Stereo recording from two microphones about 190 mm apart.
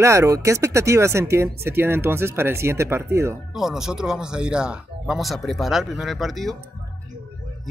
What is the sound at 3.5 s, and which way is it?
Speech, centre (ahead or behind).